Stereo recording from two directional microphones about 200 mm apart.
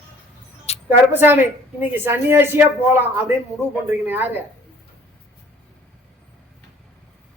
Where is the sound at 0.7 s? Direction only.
30° left (ahead or behind).